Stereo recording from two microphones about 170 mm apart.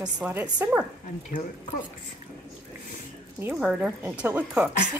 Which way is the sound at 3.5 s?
5° right (ahead or behind).